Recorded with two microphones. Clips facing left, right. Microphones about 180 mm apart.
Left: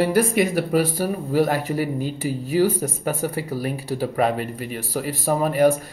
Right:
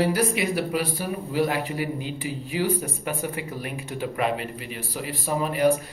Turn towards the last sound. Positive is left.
turn(degrees=45)  # may be behind; listen again after turning